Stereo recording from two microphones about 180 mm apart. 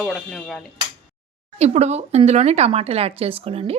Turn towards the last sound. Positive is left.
turn(degrees=-30)  # may be behind; listen again after turning